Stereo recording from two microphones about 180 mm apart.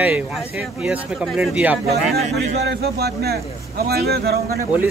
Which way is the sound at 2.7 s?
65° right (ahead or behind).